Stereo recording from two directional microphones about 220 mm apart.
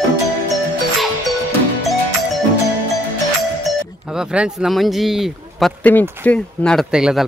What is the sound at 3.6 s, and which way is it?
Speech, 5° right (ahead or behind).